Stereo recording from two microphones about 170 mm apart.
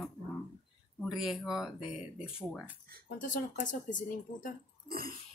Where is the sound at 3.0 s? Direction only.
50° left (ahead or behind).